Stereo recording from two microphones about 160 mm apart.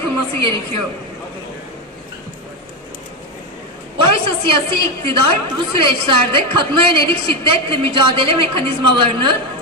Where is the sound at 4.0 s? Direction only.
35° right (ahead or behind).